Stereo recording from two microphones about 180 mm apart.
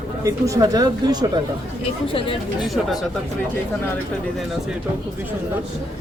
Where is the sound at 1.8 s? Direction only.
30° left (ahead or behind).